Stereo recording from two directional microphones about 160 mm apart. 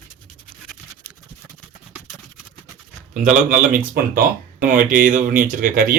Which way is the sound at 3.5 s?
60° right (ahead or behind).